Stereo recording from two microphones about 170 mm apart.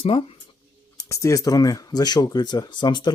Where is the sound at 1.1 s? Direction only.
20° left (ahead or behind).